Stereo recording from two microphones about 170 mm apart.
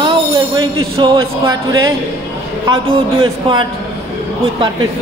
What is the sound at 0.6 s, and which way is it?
Speech, 30° right (ahead or behind).